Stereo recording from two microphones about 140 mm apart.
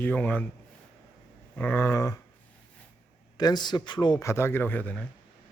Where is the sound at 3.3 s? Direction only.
30° left (ahead or behind).